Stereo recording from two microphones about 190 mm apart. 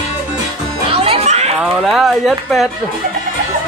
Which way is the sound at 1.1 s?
35° right (ahead or behind).